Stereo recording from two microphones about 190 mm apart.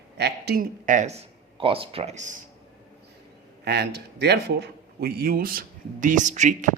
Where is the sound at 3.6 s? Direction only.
60° right (ahead or behind); by 6.7 s 40° right (ahead or behind).